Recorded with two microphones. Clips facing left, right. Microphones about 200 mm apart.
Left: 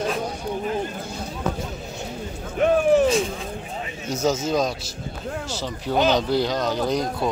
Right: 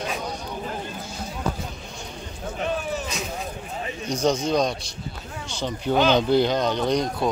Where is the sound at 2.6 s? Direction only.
55° left (ahead or behind).